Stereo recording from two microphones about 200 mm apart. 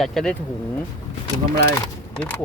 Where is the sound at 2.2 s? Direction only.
10° left (ahead or behind).